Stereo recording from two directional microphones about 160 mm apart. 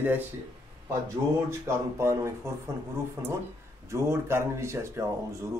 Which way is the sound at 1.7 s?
15° right (ahead or behind).